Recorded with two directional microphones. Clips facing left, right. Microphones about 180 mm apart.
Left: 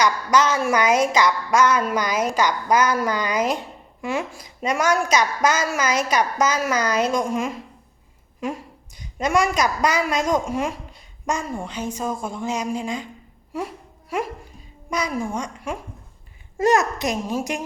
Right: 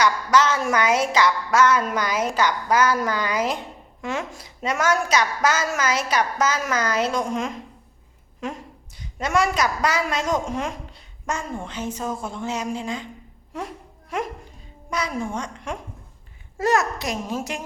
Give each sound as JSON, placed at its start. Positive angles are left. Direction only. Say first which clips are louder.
{"t": 0.0, "sound": "a woman's voice", "louder": "even", "side_deg": 15}